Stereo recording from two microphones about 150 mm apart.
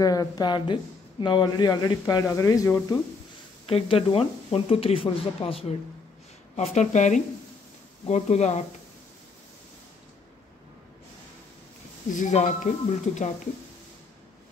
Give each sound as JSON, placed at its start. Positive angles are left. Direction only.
{"t": 0.0, "sound": "speech", "side_deg": 25}
{"t": 3.6, "sound": "speech", "side_deg": 40}
{"t": 6.5, "sound": "speech", "side_deg": 50}
{"t": 12.1, "sound": "speech", "side_deg": 55}